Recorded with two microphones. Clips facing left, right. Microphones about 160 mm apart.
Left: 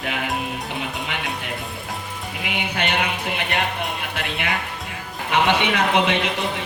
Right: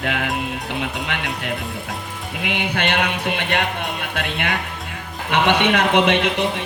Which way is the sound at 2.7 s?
60° right (ahead or behind).